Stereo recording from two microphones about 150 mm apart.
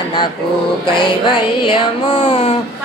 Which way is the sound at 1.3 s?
35° left (ahead or behind).